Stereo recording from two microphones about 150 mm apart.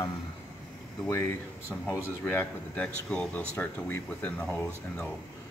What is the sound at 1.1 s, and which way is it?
Speech, 15° left (ahead or behind).